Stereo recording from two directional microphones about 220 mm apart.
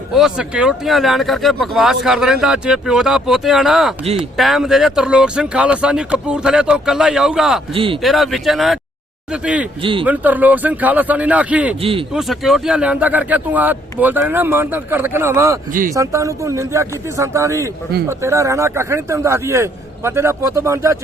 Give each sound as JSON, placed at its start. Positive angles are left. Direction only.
{"t": 0.2, "sound": "speech", "side_deg": -5}
{"t": 7.7, "sound": "speech", "side_deg": -25}
{"t": 8.0, "sound": "speech", "side_deg": 0}
{"t": 9.8, "sound": "speech", "side_deg": -25}
{"t": 10.1, "sound": "speech", "side_deg": -5}
{"t": 11.8, "sound": "speech", "side_deg": -25}
{"t": 12.1, "sound": "speech", "side_deg": 0}